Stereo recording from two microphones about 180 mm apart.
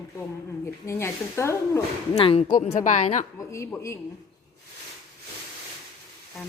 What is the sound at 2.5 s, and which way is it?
Speech, 45° left (ahead or behind).